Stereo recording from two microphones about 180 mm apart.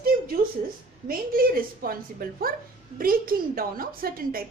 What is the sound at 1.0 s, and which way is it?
A woman's voice, 55° right (ahead or behind).